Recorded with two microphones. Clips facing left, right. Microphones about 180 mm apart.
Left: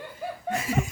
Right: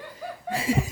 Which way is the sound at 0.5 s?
30° right (ahead or behind).